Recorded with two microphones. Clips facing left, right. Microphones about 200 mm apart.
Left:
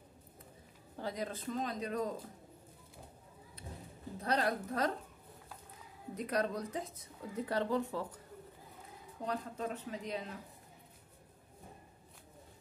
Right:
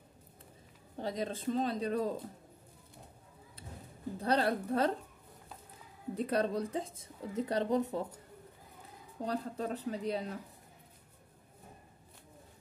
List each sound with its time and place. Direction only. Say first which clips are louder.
0.9 s speech: right 3 dB; 25° right (ahead or behind)
4.2 s a woman's voice: right 3 dB; 30° right (ahead or behind)
6.1 s speech: right 3 dB; 30° right (ahead or behind)
9.2 s a woman's voice: right 3 dB; 35° right (ahead or behind)